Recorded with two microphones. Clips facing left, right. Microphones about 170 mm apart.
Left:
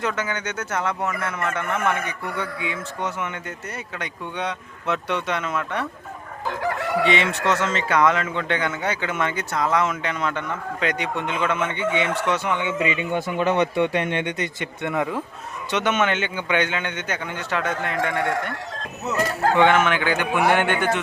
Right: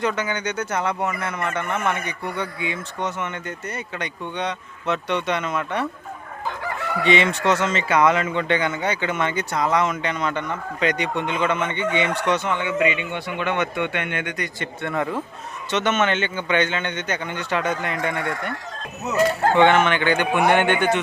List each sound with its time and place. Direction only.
0.0 s a man's voice: centre (ahead or behind)
6.5 s chicken: 75° left (ahead or behind)
7.0 s a man's voice: centre (ahead or behind)
12.8 s speech: 35° left (ahead or behind)
14.6 s a man's voice: 15° left (ahead or behind)
19.5 s a man's voice: 5° left (ahead or behind)